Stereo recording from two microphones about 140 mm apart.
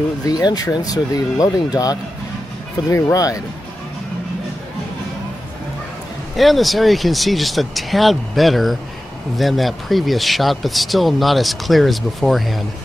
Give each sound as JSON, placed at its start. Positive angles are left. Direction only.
{"t": 0.2, "sound": "speech", "side_deg": 30}
{"t": 6.3, "sound": "speech", "side_deg": 0}